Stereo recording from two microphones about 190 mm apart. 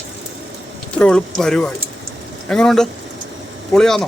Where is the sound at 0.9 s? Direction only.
5° left (ahead or behind).